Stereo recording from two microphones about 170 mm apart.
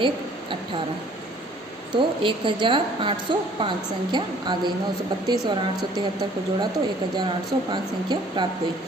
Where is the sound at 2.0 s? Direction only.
30° right (ahead or behind).